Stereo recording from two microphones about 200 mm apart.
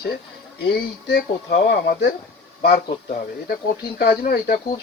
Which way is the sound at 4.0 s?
50° left (ahead or behind).